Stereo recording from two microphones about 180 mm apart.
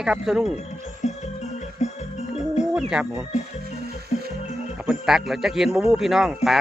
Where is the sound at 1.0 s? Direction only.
40° left (ahead or behind).